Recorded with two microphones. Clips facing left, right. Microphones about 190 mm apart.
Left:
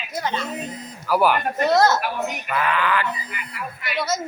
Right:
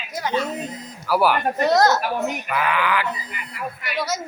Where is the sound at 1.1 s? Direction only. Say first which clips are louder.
Even; 10° right (ahead or behind).